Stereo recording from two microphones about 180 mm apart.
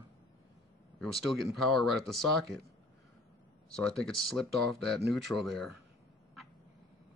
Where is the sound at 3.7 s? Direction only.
5° left (ahead or behind).